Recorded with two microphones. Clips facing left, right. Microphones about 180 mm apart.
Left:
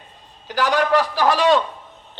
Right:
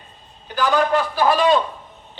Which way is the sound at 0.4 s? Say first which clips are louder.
Right 1 dB; 80° left.